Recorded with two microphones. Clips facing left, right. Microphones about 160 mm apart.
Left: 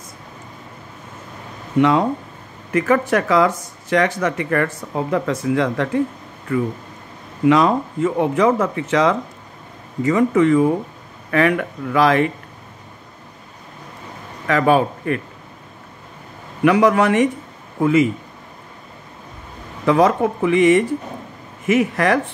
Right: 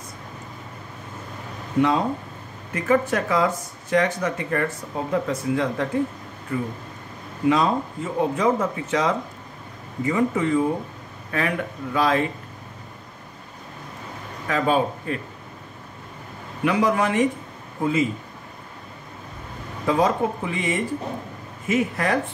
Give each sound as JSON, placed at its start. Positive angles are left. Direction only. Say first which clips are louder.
{"t": 1.8, "sound": "speech", "louder": "left 5 dB", "side_deg": 80}
{"t": 7.4, "sound": "speech", "louder": "left 5 dB", "side_deg": 85}
{"t": 14.5, "sound": "speech", "louder": "left 5 dB", "side_deg": 75}
{"t": 16.6, "sound": "speech", "louder": "left 6 dB", "side_deg": 75}
{"t": 19.9, "sound": "speech", "louder": "left 5 dB", "side_deg": 75}